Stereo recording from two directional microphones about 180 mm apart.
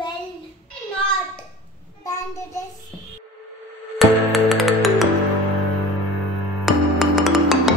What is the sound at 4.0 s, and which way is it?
Music, centre (ahead or behind).